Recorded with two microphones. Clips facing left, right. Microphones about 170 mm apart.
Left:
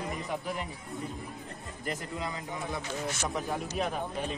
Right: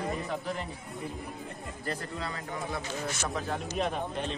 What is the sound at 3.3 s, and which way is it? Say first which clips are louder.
A man's voice: even; 5° left (ahead or behind).